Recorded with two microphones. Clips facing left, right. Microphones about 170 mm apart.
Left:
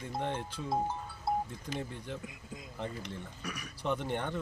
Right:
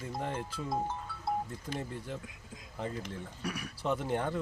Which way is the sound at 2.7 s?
5° right (ahead or behind).